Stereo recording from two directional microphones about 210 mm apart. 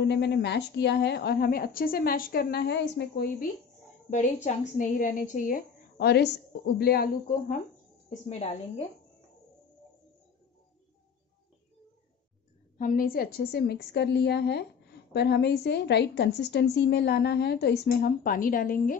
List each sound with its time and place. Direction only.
0.0 s a woman's voice: 55° left (ahead or behind)
4.5 s a woman's voice: 35° left (ahead or behind)
8.3 s a woman's voice: 30° left (ahead or behind)
12.7 s a woman's voice: 40° left (ahead or behind)